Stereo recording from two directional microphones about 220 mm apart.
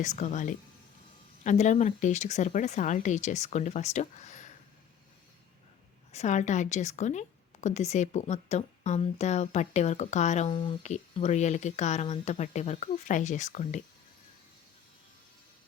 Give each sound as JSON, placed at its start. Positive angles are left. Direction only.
{"t": 0.2, "sound": "a woman's voice", "side_deg": 35}
{"t": 6.1, "sound": "a woman's voice", "side_deg": 30}